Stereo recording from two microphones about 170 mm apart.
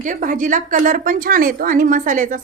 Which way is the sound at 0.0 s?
50° right (ahead or behind).